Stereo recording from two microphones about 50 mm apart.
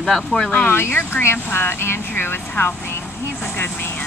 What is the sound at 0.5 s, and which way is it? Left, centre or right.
Speech, left.